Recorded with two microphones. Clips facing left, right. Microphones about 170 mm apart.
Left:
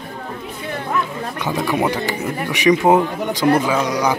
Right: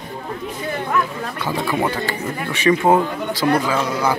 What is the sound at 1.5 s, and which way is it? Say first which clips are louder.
Speech: left 2 dB; 15° left (ahead or behind).